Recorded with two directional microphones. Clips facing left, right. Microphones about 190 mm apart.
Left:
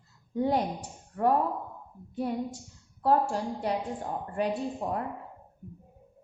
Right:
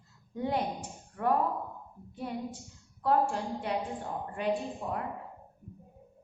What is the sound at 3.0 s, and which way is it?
Speech, 35° left (ahead or behind).